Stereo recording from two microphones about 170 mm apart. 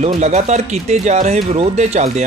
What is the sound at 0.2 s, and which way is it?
Speech, 40° right (ahead or behind).